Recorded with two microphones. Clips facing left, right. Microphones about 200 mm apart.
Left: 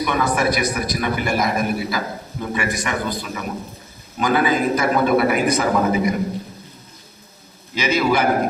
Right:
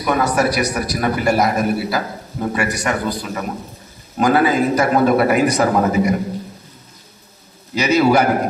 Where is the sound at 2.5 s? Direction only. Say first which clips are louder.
Right 3 dB; 40° right (ahead or behind).